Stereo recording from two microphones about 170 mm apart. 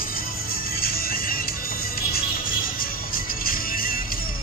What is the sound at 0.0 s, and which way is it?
Music, 60° left (ahead or behind).